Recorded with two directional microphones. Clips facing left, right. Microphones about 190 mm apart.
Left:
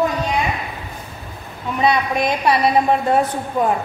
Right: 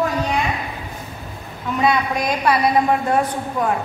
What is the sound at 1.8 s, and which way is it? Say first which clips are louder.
Speech: left 1 dB; 25° left (ahead or behind).